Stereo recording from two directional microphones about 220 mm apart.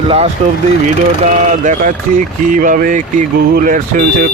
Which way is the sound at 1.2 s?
35° right (ahead or behind).